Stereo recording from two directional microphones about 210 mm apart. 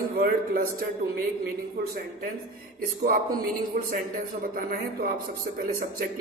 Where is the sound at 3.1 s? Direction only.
40° right (ahead or behind).